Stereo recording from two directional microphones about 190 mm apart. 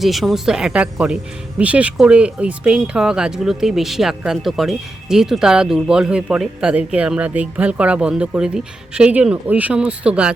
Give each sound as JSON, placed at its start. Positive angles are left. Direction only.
{"t": 0.0, "sound": "speech", "side_deg": 0}